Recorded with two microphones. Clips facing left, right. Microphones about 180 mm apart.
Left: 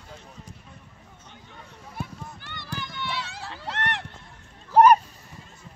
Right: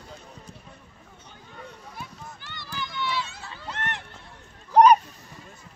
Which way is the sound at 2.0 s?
55° left (ahead or behind).